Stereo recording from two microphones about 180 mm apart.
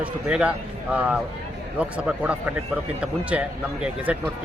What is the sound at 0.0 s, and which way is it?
Speech, 5° right (ahead or behind).